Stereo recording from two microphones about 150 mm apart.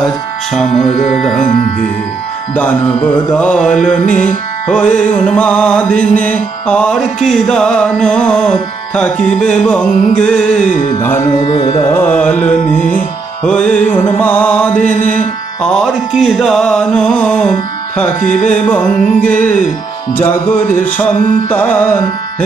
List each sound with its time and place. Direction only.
1.1 s music: 5° left (ahead or behind)
2.5 s music: 10° left (ahead or behind)
11.5 s carnatic music: 35° left (ahead or behind)
11.9 s music: 15° left (ahead or behind)
14.8 s mantra: 55° left (ahead or behind)
15.6 s music: 5° left (ahead or behind)